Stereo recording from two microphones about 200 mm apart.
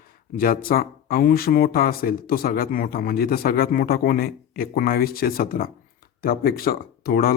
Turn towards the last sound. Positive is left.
turn(degrees=50)  # may be behind; listen again after turning